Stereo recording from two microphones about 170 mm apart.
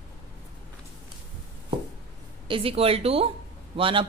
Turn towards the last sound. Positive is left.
turn(degrees=-30)  # may be behind; listen again after turning